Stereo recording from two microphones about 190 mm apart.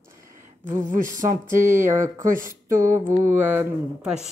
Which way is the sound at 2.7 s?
15° right (ahead or behind).